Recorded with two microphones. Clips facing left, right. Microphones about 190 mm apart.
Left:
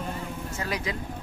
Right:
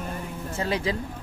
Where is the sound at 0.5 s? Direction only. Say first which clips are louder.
Right 6 dB; 30° right (ahead or behind).